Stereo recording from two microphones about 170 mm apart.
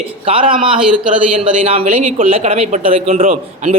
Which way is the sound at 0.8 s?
5° right (ahead or behind).